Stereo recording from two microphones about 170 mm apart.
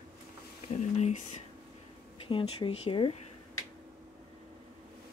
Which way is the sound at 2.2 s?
30° left (ahead or behind).